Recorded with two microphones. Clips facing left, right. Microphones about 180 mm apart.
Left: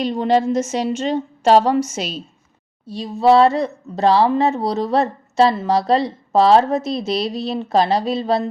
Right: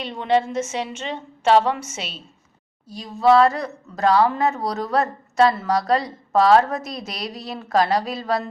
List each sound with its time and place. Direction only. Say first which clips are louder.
0.0 s a woman's voice: left 4 dB; 40° left (ahead or behind)
2.8 s speech: left 3 dB; 30° left (ahead or behind)